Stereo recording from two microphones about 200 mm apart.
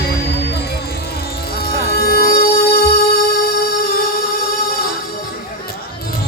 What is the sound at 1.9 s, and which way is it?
Music, 50° left (ahead or behind).